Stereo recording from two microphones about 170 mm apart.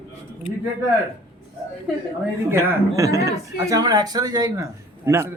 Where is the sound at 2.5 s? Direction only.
15° right (ahead or behind).